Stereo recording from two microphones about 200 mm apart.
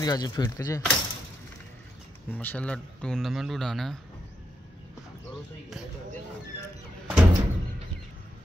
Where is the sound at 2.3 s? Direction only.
10° left (ahead or behind).